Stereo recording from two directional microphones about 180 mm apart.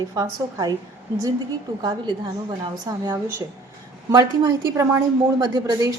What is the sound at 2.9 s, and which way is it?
Speech, 20° right (ahead or behind).